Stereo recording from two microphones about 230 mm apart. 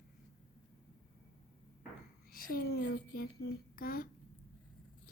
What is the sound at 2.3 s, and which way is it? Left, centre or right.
Speech, left.